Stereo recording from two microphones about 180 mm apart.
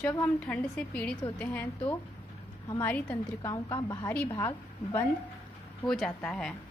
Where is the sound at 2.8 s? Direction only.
10° left (ahead or behind).